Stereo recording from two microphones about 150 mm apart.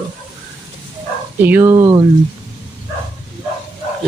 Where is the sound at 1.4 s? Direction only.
15° right (ahead or behind).